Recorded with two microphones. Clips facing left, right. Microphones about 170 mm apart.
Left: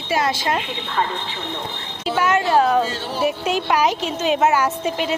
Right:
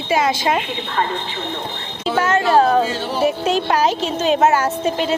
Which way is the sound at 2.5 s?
35° right (ahead or behind).